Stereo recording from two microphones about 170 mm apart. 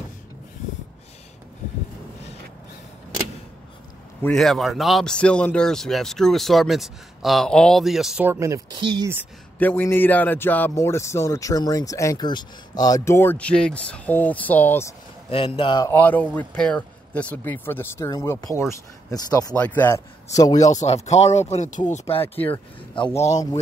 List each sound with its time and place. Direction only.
4.2 s a man's voice: 5° left (ahead or behind)
8.3 s speech: 15° right (ahead or behind)
9.6 s a man's voice: 10° left (ahead or behind)
15.2 s speech: 35° left (ahead or behind)
15.9 s a man's voice: 10° left (ahead or behind)
19.5 s a man's voice: 10° left (ahead or behind)
20.7 s speech: 40° left (ahead or behind)
22.9 s speech: 35° left (ahead or behind)